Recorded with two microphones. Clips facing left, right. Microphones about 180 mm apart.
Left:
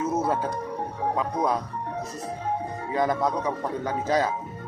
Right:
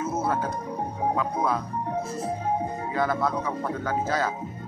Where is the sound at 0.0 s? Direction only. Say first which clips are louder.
Left 2 dB; 15° left (ahead or behind).